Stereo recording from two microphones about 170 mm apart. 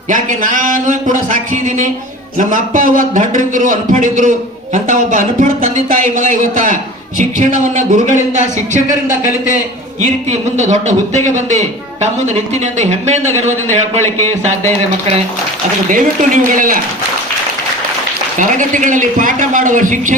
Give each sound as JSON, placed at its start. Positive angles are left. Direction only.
{"t": 0.1, "sound": "a man's voice", "side_deg": -50}
{"t": 10.6, "sound": "a man's voice", "side_deg": -45}
{"t": 12.8, "sound": "speech", "side_deg": -40}
{"t": 14.0, "sound": "a man's voice", "side_deg": 15}
{"t": 15.9, "sound": "a man's voice", "side_deg": -50}
{"t": 18.3, "sound": "a man's voice", "side_deg": -45}